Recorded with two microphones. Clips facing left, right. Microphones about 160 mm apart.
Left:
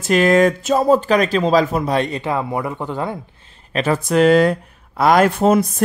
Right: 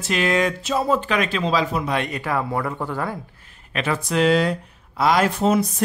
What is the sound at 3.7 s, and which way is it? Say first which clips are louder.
Speech: left 6 dB; 40° left (ahead or behind).